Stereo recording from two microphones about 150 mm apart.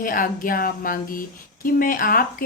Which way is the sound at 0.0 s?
70° left (ahead or behind).